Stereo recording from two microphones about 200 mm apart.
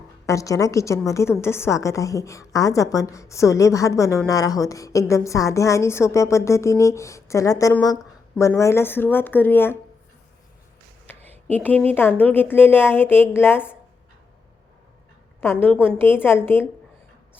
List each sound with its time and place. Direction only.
0.3 s a woman's voice: 15° left (ahead or behind)
11.1 s a sound: 10° left (ahead or behind)
11.5 s a woman's voice: 10° left (ahead or behind)
15.4 s a woman's voice: 10° left (ahead or behind)